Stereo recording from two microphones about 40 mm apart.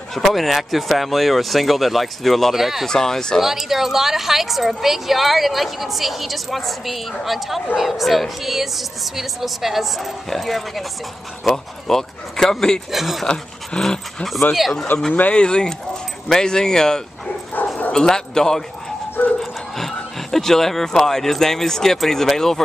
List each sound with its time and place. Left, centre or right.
0.1 s a woman's voice: centre
2.5 s speech: centre
2.9 s speech: centre
3.3 s a woman's voice: centre
12.9 s a woman's voice: centre
13.3 s speech: centre
14.9 s speech: left
15.3 s speech: left
19.8 s speech: centre